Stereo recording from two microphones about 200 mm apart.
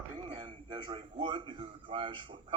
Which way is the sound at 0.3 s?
25° right (ahead or behind).